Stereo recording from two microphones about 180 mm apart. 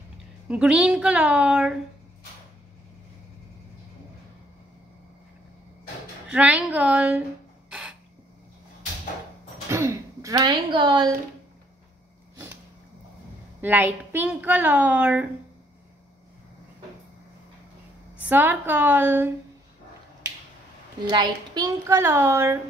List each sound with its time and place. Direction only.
0.5 s a woman's voice: 5° right (ahead or behind)
6.2 s a woman's voice: 5° right (ahead or behind)
9.7 s speech: 15° right (ahead or behind)
13.6 s a woman's voice: 10° right (ahead or behind)
18.1 s a woman's voice: 10° right (ahead or behind)
21.1 s a woman's voice: 20° right (ahead or behind)